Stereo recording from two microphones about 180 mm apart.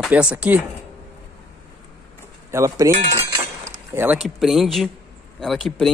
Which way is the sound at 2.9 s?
35° right (ahead or behind).